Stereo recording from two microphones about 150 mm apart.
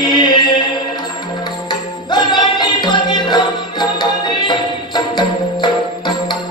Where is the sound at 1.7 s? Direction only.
30° left (ahead or behind).